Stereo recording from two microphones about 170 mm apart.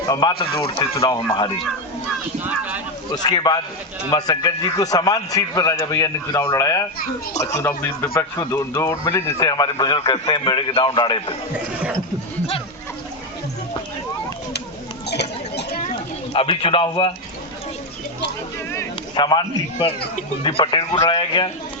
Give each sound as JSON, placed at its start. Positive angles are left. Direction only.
{"t": 0.1, "sound": "a man's voice", "side_deg": 25}
{"t": 2.4, "sound": "speech", "side_deg": -10}
{"t": 3.1, "sound": "speech", "side_deg": 25}
{"t": 15.0, "sound": "a sound", "side_deg": 75}
{"t": 16.3, "sound": "a man's voice", "side_deg": 35}
{"t": 18.7, "sound": "a sound", "side_deg": 20}
{"t": 20.4, "sound": "speech", "side_deg": 30}
{"t": 20.9, "sound": "a man's voice", "side_deg": 35}